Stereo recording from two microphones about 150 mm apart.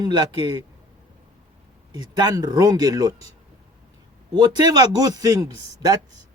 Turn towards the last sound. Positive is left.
turn(degrees=-25)  # may be behind; listen again after turning